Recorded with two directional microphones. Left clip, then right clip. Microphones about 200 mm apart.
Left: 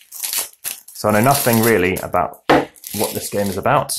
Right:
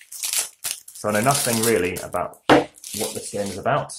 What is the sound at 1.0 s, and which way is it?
Speech, 35° left (ahead or behind).